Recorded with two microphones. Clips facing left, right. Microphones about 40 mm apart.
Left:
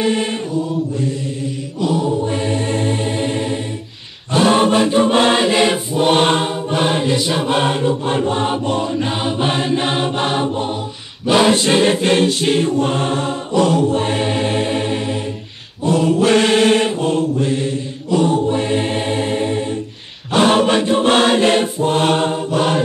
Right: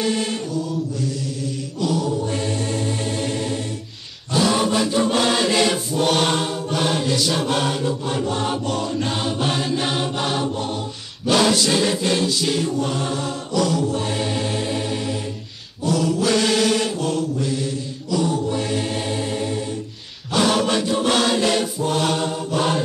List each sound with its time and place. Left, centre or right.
0.0 s mantra: left
1.8 s music: left
4.3 s choir: left
15.8 s mantra: left
20.3 s chant: left